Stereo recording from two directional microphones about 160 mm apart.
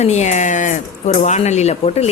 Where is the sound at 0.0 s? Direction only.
45° left (ahead or behind).